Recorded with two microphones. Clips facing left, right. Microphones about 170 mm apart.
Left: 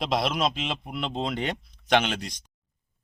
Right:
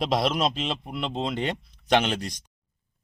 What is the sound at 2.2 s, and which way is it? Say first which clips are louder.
Speech: right 3 dB; 40° right (ahead or behind).